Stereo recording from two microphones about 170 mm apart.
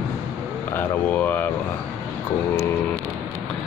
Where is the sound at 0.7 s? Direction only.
10° left (ahead or behind).